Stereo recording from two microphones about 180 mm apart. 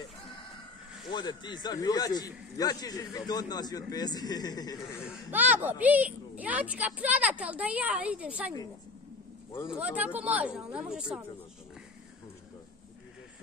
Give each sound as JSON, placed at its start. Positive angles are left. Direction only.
{"t": 1.0, "sound": "speech", "side_deg": 25}
{"t": 5.0, "sound": "a woman's voice", "side_deg": -5}
{"t": 9.7, "sound": "a woman's voice", "side_deg": -5}